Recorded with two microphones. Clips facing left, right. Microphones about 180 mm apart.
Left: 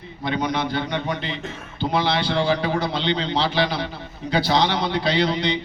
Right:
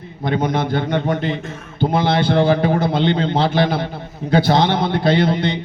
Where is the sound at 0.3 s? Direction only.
50° right (ahead or behind).